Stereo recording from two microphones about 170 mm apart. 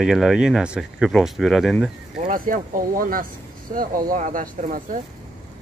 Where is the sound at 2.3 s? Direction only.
55° right (ahead or behind).